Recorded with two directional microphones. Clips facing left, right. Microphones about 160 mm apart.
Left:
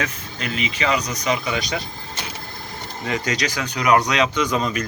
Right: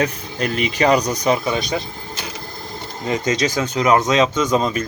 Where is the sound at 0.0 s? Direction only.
45° right (ahead or behind).